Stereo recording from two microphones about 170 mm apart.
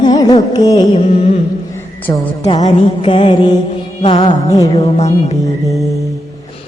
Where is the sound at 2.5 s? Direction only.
40° left (ahead or behind).